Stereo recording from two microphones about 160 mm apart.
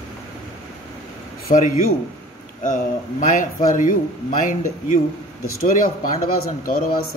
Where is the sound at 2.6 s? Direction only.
55° left (ahead or behind).